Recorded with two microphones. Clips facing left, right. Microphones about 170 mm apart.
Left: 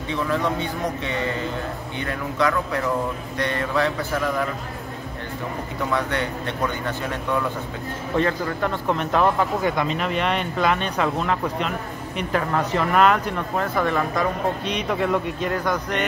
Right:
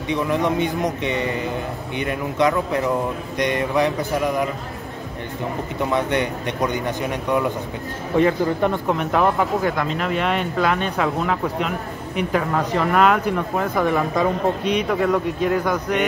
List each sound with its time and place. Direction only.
0.1 s speech: 15° right (ahead or behind)
5.8 s speech: 20° right (ahead or behind)